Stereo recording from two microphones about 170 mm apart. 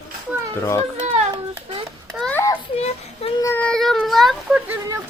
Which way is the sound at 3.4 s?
10° left (ahead or behind).